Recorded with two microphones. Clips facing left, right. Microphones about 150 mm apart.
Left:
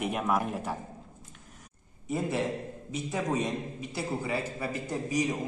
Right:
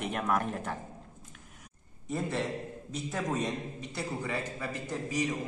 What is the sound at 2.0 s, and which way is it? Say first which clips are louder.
Speech: left 3 dB; 10° left (ahead or behind).